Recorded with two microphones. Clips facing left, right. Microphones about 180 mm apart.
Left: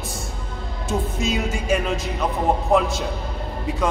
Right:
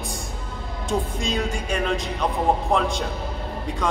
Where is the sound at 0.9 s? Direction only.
5° left (ahead or behind).